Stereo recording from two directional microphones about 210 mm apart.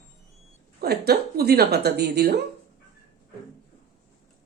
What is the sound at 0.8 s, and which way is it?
A woman's voice, 50° right (ahead or behind).